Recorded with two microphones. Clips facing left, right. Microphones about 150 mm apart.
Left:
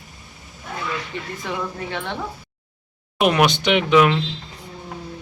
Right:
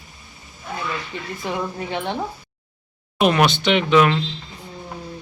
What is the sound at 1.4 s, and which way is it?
Speech, 15° right (ahead or behind).